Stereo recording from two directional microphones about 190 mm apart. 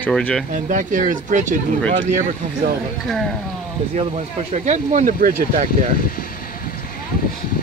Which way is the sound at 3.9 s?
35° right (ahead or behind).